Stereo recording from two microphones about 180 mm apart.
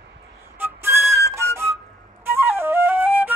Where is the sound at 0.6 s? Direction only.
15° right (ahead or behind).